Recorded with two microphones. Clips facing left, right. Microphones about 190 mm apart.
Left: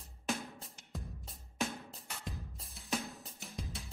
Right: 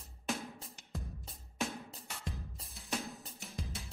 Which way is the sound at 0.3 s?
Centre (ahead or behind).